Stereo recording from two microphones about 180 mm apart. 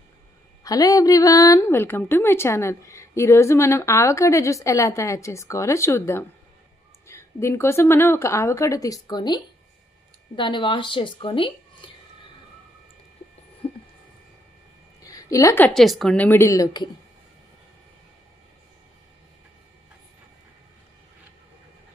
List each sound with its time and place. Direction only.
0.7 s a woman's voice: 20° left (ahead or behind)
13.6 s a sound: 30° left (ahead or behind)
15.0 s a woman's voice: 20° left (ahead or behind)